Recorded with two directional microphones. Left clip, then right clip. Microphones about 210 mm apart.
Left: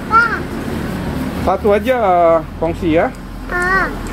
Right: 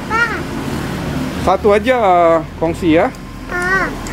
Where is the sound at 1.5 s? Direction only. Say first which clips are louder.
Right 2 dB; 30° right (ahead or behind).